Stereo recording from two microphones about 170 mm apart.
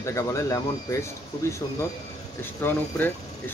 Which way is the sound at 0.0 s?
15° left (ahead or behind).